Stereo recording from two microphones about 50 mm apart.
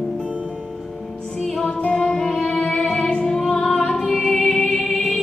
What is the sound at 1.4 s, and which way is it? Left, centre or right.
Music, centre.